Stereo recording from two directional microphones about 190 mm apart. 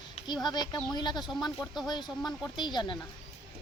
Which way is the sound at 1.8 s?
20° left (ahead or behind).